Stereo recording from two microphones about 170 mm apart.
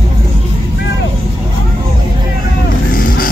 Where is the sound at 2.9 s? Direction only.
60° left (ahead or behind).